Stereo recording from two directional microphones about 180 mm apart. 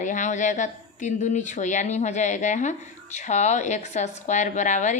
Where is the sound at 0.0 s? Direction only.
45° left (ahead or behind).